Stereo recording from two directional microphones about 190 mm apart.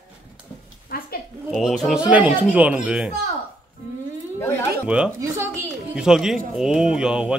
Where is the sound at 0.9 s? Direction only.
50° left (ahead or behind).